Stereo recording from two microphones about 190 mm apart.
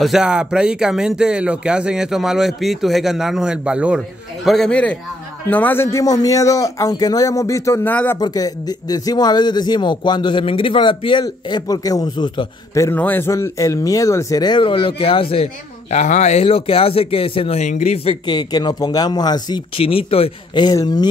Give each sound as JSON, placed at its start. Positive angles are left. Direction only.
{"t": 0.0, "sound": "a man's voice", "side_deg": -5}
{"t": 8.2, "sound": "a man's voice", "side_deg": 20}